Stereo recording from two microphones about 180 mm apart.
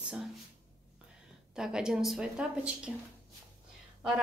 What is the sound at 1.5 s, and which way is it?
Speech, 5° right (ahead or behind).